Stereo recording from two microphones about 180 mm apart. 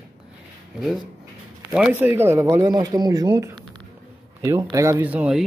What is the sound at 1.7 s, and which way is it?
Speech, 5° right (ahead or behind).